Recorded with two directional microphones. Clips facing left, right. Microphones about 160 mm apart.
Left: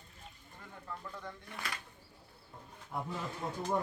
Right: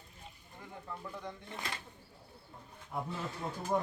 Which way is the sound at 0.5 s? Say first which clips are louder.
Right 1 dB; 15° right (ahead or behind).